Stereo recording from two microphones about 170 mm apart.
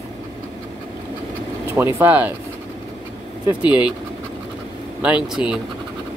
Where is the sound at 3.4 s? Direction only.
10° right (ahead or behind).